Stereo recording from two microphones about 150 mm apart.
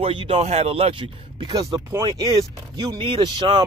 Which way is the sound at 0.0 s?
35° right (ahead or behind).